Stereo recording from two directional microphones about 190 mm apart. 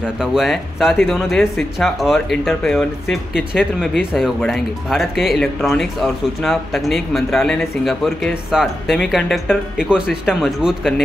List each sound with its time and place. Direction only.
0.0 s speech: 5° right (ahead or behind)